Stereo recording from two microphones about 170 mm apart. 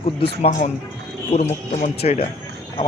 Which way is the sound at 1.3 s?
45° left (ahead or behind).